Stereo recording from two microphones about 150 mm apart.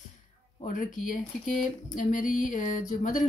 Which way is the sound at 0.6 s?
65° left (ahead or behind).